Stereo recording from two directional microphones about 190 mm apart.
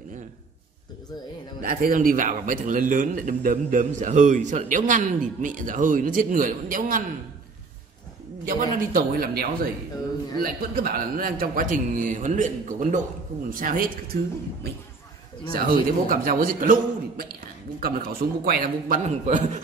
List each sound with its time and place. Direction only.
1.6 s a man's voice: 45° right (ahead or behind)
8.5 s a man's voice: 50° right (ahead or behind)
17.7 s a man's voice: 50° right (ahead or behind)